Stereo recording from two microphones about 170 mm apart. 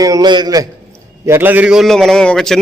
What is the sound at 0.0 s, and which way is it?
A man's voice, 20° right (ahead or behind).